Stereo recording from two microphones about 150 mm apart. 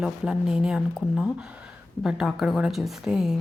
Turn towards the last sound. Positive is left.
turn(degrees=0)  # may be behind; listen again after turning